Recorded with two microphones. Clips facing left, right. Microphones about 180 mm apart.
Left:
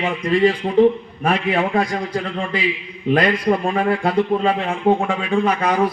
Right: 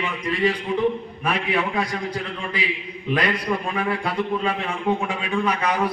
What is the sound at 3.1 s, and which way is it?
A man's voice, 50° left (ahead or behind).